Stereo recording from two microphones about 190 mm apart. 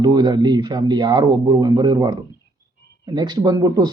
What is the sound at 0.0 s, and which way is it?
Speech, 20° right (ahead or behind).